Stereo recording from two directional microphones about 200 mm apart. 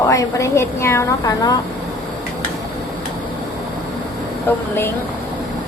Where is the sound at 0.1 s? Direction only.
15° left (ahead or behind).